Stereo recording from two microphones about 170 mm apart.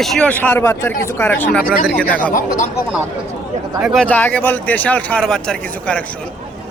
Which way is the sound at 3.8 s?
Centre (ahead or behind).